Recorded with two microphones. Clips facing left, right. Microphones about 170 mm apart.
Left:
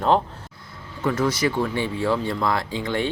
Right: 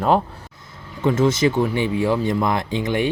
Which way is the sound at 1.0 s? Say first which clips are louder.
Right 5 dB; 25° right (ahead or behind).